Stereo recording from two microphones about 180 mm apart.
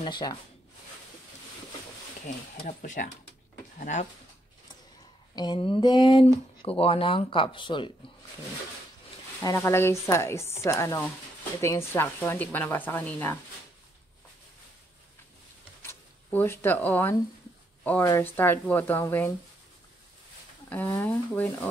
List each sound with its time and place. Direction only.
0.0 s speech: 25° left (ahead or behind)
2.2 s speech: 45° left (ahead or behind)
5.3 s speech: 25° left (ahead or behind)
9.4 s a woman's voice: 15° left (ahead or behind)
15.8 s a woman's voice: 10° left (ahead or behind)
20.9 s a woman's voice: 15° left (ahead or behind)